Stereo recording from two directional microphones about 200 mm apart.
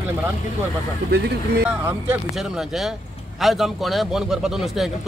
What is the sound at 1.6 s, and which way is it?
A man's voice, 10° right (ahead or behind).